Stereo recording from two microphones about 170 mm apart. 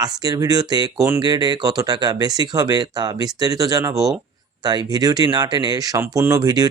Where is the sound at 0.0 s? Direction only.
20° right (ahead or behind).